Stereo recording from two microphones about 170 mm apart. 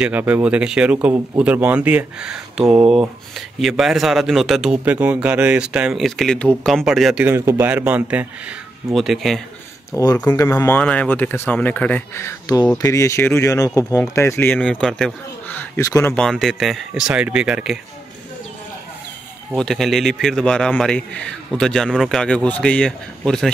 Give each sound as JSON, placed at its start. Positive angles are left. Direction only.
{"t": 0.0, "sound": "speech", "side_deg": -10}
{"t": 7.2, "sound": "a man's voice", "side_deg": -15}
{"t": 9.9, "sound": "speech", "side_deg": 15}
{"t": 16.2, "sound": "speech", "side_deg": 0}
{"t": 19.5, "sound": "speech", "side_deg": 0}